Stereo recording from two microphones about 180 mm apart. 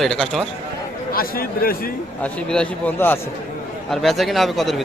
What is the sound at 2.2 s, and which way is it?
A man's voice, 5° left (ahead or behind).